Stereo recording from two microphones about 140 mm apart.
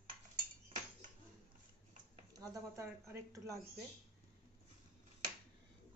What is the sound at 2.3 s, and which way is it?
A woman's voice, 25° right (ahead or behind).